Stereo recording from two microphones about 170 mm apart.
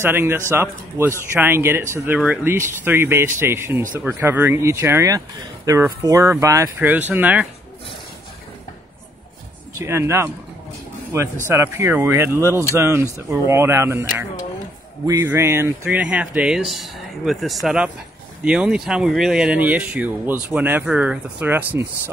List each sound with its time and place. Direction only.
0.0 s speech: 15° right (ahead or behind)
9.8 s speech: 15° right (ahead or behind)
11.4 s speech: 15° right (ahead or behind)
15.0 s speech: 15° right (ahead or behind)